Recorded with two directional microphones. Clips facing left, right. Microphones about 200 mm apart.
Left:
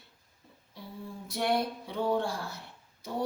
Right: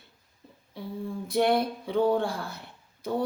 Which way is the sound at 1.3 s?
55° right (ahead or behind).